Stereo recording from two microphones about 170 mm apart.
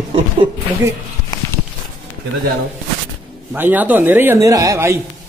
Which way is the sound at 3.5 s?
10° right (ahead or behind).